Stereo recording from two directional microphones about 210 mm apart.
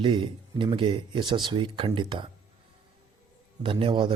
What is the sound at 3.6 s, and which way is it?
Speech, 25° right (ahead or behind).